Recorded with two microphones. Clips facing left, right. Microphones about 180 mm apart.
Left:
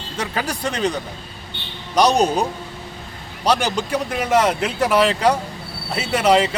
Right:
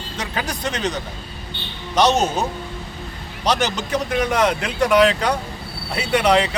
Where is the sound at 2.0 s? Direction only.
35° left (ahead or behind).